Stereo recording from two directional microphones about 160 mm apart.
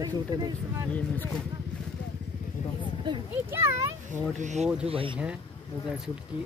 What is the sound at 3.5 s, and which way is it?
Speech, 15° right (ahead or behind).